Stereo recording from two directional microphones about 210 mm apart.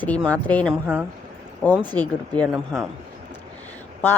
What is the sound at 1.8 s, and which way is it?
Speech, 20° right (ahead or behind).